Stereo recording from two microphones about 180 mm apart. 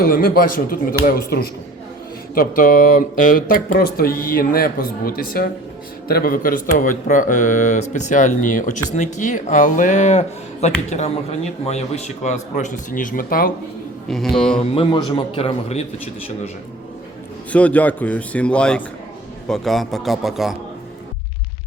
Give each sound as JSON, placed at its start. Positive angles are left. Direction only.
{"t": 0.0, "sound": "a man's voice", "side_deg": 55}
{"t": 14.1, "sound": "a man's voice", "side_deg": 0}
{"t": 14.6, "sound": "a man's voice", "side_deg": 30}
{"t": 17.5, "sound": "a man's voice", "side_deg": 5}